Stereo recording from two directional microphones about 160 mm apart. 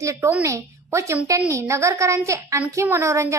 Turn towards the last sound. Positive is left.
turn(degrees=-20)  # may be behind; listen again after turning